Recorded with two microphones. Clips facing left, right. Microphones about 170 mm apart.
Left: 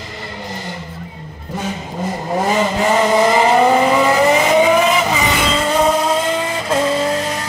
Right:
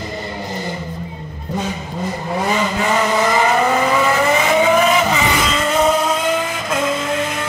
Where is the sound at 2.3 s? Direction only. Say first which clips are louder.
Left 3 dB; 35° left (ahead or behind).